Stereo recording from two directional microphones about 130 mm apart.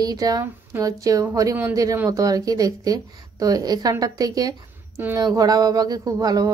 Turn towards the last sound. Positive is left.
turn(degrees=-30)  # may be behind; listen again after turning